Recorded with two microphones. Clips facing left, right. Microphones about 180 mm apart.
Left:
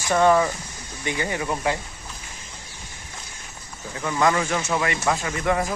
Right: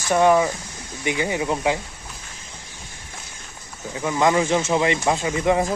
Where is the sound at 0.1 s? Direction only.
15° right (ahead or behind).